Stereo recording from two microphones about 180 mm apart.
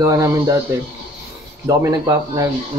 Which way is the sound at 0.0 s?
15° right (ahead or behind).